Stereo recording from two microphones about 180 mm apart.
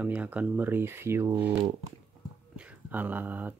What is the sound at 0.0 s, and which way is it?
Speech, 10° right (ahead or behind).